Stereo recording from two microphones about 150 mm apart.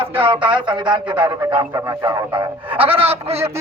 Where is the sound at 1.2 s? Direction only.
30° right (ahead or behind).